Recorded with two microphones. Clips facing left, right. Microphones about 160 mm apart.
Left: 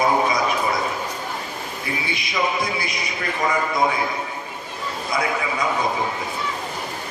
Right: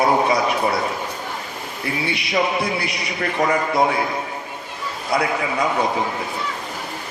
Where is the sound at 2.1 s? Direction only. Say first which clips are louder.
Right 3 dB; 70° right (ahead or behind).